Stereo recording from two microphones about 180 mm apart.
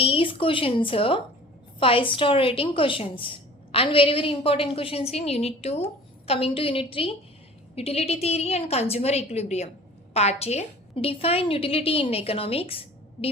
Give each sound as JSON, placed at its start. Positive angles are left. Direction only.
{"t": 0.0, "sound": "a woman's voice", "side_deg": 30}